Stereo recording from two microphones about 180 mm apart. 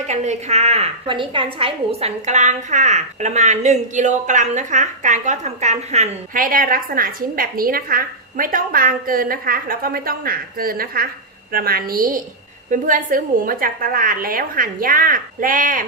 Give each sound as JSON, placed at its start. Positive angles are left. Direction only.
{"t": 0.1, "sound": "a woman's voice", "side_deg": -40}